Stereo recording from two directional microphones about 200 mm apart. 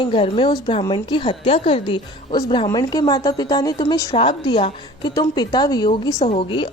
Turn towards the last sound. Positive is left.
turn(degrees=25)  # may be behind; listen again after turning